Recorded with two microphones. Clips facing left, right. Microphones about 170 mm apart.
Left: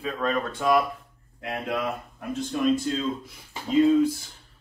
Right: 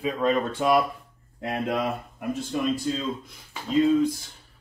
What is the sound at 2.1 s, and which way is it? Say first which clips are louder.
Speech: left 1 dB; centre (ahead or behind).